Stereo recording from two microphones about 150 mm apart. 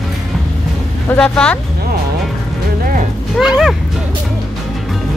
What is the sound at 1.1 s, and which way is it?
Speech, 5° left (ahead or behind).